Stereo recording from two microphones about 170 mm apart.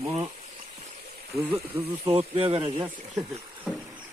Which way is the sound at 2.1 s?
35° right (ahead or behind).